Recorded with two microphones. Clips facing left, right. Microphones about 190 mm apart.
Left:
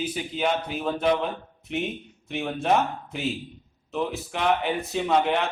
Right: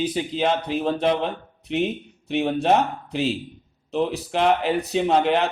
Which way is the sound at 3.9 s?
35° right (ahead or behind).